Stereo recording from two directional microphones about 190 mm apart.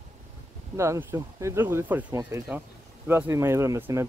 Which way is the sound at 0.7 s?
15° right (ahead or behind).